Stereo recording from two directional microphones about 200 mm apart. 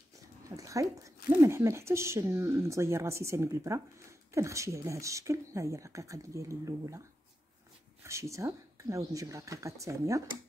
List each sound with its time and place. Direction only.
0.6 s speech: 15° right (ahead or behind)
8.0 s speech: 15° right (ahead or behind)